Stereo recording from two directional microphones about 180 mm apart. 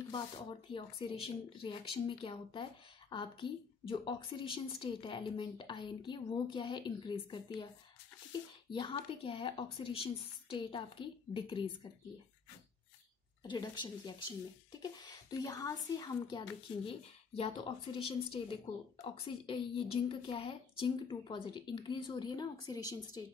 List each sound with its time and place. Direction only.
0.1 s a woman's voice: 25° left (ahead or behind)
8.7 s a woman's voice: 25° left (ahead or behind)
13.4 s a woman's voice: 25° left (ahead or behind)